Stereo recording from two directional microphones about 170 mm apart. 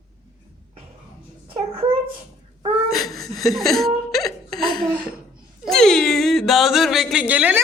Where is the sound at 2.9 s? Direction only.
Centre (ahead or behind).